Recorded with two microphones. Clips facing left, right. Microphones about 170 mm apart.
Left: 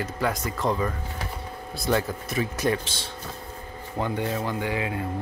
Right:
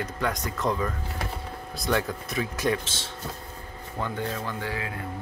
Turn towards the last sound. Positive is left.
turn(degrees=20)  # may be behind; listen again after turning